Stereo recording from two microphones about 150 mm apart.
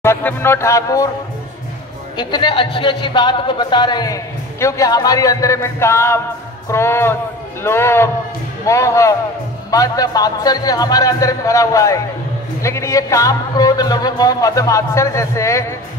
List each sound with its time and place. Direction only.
0.0 s speech: 15° left (ahead or behind)
2.1 s a man's voice: 30° left (ahead or behind)